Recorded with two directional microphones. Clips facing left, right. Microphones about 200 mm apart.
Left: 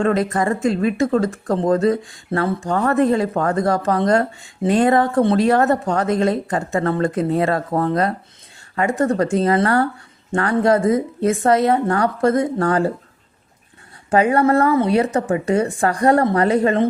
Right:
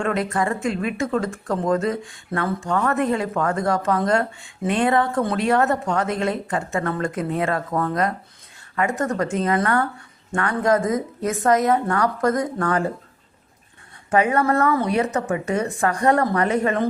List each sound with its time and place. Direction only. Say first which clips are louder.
0.0 s speech: left 4 dB; 35° left (ahead or behind)
14.1 s speech: left 4 dB; 30° left (ahead or behind)